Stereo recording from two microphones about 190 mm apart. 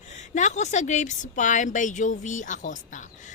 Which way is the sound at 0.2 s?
40° left (ahead or behind).